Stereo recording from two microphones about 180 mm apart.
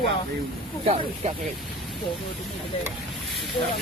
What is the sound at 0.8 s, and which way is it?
Speech, 35° right (ahead or behind).